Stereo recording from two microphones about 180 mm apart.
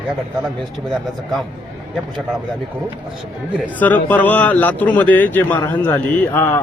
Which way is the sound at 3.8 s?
10° left (ahead or behind).